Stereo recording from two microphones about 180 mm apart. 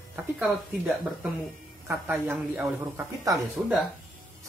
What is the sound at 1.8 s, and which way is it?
Speech, 10° right (ahead or behind).